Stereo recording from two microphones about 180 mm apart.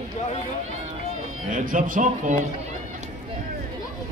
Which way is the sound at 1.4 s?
50° right (ahead or behind).